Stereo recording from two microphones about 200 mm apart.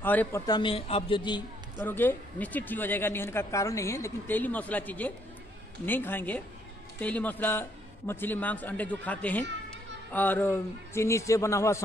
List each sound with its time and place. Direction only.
0.0 s speech: 10° left (ahead or behind)
0.5 s a man's voice: 25° left (ahead or behind)
1.8 s speech: 10° left (ahead or behind)